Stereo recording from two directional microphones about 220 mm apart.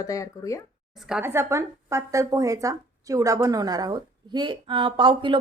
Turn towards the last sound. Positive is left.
turn(degrees=-20)  # may be behind; listen again after turning